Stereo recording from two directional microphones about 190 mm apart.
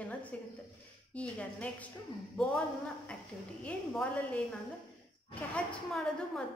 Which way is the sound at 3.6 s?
5° left (ahead or behind).